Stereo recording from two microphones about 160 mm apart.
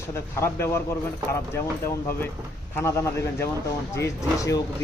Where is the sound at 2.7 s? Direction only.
15° left (ahead or behind).